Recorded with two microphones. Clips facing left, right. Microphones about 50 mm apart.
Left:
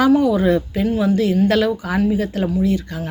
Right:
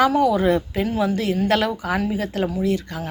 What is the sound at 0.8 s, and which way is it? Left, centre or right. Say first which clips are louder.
Speech: left 4 dB; right.